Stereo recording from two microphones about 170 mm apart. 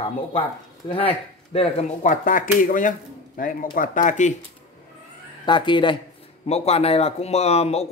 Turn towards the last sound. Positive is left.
turn(degrees=40)  # may be behind; listen again after turning